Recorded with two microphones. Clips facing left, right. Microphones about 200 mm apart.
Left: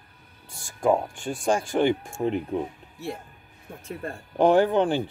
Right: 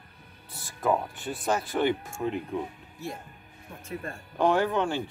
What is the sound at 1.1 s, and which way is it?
Speech, 50° left (ahead or behind).